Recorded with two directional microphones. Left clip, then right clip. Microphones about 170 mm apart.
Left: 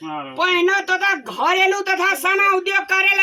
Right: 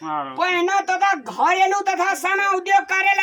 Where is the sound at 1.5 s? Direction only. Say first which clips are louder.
Left 2 dB; 25° right (ahead or behind).